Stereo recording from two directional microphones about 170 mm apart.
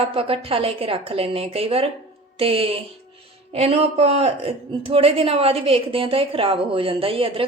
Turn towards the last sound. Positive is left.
turn(degrees=-35)  # may be behind; listen again after turning